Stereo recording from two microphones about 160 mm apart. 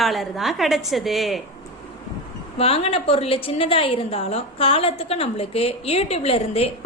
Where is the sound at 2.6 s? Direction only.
35° left (ahead or behind).